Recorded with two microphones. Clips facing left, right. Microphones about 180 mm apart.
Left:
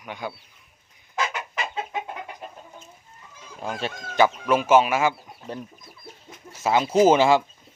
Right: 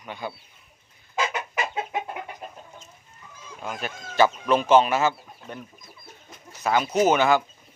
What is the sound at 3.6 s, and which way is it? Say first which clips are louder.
Speech: left 3 dB; 30° left (ahead or behind).